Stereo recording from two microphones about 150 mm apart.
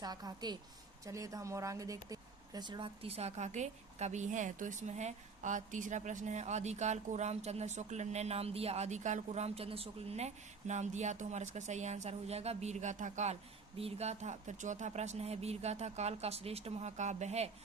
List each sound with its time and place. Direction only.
0.0 s a woman's voice: 25° right (ahead or behind); by 13.3 s 55° right (ahead or behind)
13.7 s speech: 45° right (ahead or behind)